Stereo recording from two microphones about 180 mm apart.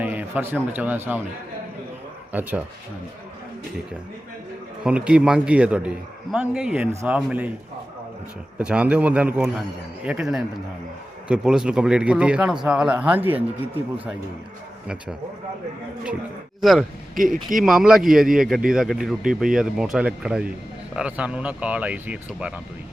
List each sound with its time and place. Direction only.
0.0 s a man's voice: 10° right (ahead or behind)
2.3 s a man's voice: 10° right (ahead or behind)
4.8 s a man's voice: 5° right (ahead or behind)
8.5 s a man's voice: 5° right (ahead or behind)
16.6 s speech: centre (ahead or behind)
17.2 s speech: 50° right (ahead or behind)
17.7 s a man's voice: centre (ahead or behind)